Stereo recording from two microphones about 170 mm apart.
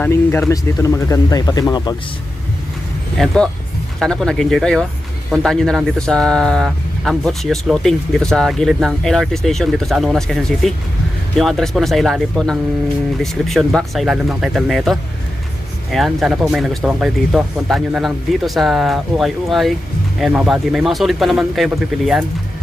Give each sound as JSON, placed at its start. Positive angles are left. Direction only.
{"t": 0.0, "sound": "speech", "side_deg": 10}
{"t": 3.2, "sound": "speech", "side_deg": 5}